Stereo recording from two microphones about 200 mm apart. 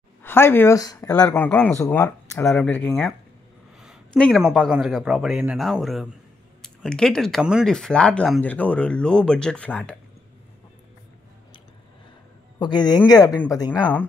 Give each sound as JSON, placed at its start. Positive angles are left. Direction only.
{"t": 0.2, "sound": "speech", "side_deg": 10}
{"t": 12.5, "sound": "a man's voice", "side_deg": 20}